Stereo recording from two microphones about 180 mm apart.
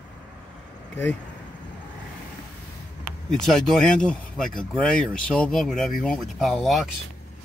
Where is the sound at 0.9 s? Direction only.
10° left (ahead or behind).